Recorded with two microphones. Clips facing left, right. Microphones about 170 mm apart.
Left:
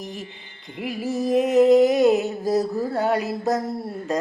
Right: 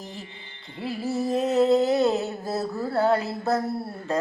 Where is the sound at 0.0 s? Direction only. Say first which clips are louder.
Left 5 dB; 15° left (ahead or behind).